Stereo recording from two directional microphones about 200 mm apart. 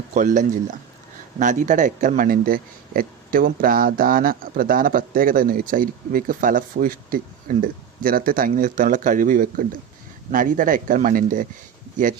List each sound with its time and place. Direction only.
0.1 s a man's voice: 40° right (ahead or behind)